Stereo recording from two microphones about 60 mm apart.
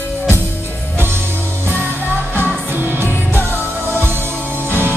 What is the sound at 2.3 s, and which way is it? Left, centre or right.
Music, right.